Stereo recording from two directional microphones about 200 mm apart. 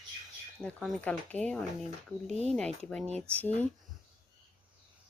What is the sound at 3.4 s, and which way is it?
Speech, 10° left (ahead or behind).